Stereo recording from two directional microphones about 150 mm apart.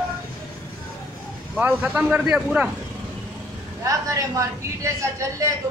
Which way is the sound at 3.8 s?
20° right (ahead or behind).